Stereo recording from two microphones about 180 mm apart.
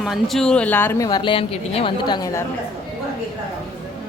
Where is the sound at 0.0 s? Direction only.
Centre (ahead or behind); by 2.4 s 20° left (ahead or behind).